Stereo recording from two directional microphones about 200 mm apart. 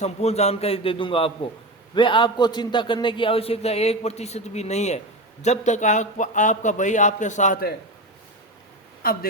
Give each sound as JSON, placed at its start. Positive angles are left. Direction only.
{"t": 0.0, "sound": "a man's voice", "side_deg": 30}
{"t": 9.0, "sound": "a woman's voice", "side_deg": 45}